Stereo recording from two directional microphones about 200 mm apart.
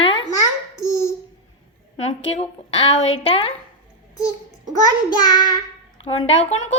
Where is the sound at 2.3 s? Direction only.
30° left (ahead or behind).